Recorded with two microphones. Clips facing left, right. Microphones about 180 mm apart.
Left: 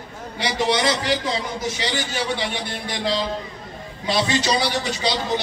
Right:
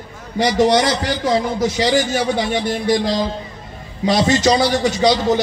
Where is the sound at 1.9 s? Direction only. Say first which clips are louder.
Right 8 dB; 45° right (ahead or behind).